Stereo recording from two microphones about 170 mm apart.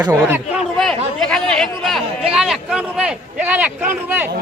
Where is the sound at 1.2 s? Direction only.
5° left (ahead or behind).